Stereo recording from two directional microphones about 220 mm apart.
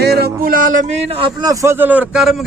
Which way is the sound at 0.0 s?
45° right (ahead or behind).